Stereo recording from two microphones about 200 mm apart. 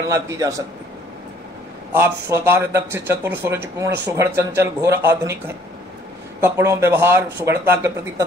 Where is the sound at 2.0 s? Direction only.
10° right (ahead or behind).